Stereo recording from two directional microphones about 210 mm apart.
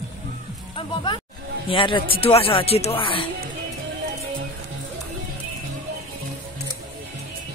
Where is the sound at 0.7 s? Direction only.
20° left (ahead or behind).